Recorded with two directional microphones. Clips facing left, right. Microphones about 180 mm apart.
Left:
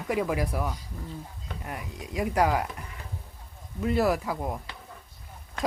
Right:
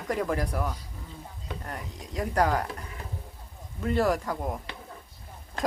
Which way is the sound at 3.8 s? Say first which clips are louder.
Left 1 dB; 5° left (ahead or behind).